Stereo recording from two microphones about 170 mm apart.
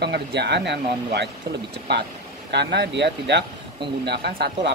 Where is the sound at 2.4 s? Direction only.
80° right.